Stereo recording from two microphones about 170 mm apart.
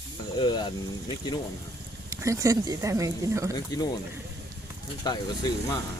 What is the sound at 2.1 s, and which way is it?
Speech, 20° right (ahead or behind).